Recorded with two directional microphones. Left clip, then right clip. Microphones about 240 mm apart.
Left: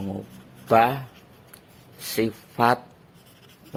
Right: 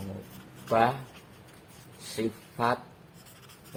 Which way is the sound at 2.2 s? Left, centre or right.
Left.